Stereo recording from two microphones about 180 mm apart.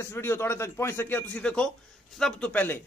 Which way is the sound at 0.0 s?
15° left (ahead or behind).